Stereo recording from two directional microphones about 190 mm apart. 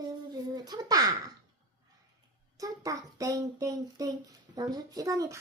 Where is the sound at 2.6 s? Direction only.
20° right (ahead or behind).